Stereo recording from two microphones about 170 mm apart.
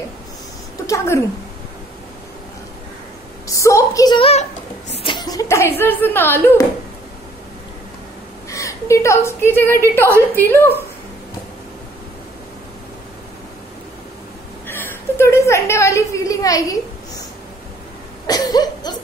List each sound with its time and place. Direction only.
0.8 s a sound: 15° left (ahead or behind)
3.4 s a woman's voice: 20° left (ahead or behind); by 4.5 s 35° left (ahead or behind)
4.9 s chuckle: 30° left (ahead or behind)
5.8 s a woman's voice: 10° left (ahead or behind)
8.5 s a woman's voice: 20° left (ahead or behind)
14.7 s a sound: 15° left (ahead or behind)
18.2 s cough: 20° left (ahead or behind)